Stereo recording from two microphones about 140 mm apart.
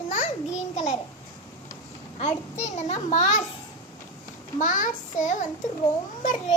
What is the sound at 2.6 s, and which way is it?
Speech, 55° left (ahead or behind).